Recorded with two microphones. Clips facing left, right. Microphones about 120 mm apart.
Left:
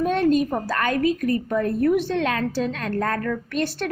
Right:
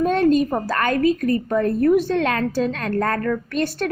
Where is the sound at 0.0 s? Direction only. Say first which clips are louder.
Right 3 dB; 45° right (ahead or behind).